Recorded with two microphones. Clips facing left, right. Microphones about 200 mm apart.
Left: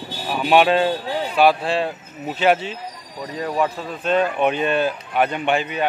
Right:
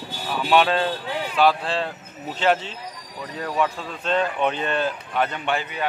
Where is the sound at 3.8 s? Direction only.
10° left (ahead or behind).